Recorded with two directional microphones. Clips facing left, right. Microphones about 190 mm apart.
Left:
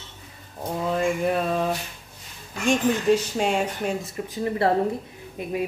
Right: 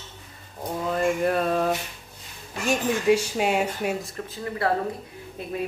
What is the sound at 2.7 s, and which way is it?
Speech, 5° right (ahead or behind).